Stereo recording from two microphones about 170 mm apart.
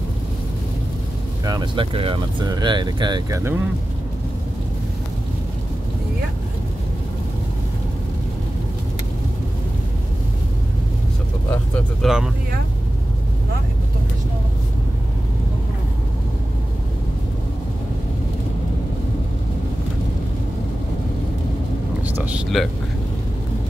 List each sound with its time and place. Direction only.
1.4 s speech: 25° right (ahead or behind)
11.5 s vehicle: 10° left (ahead or behind)
22.0 s a sound: 10° right (ahead or behind)